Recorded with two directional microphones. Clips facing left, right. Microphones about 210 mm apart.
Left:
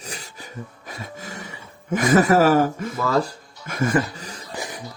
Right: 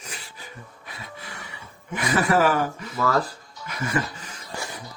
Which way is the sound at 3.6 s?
50° left (ahead or behind).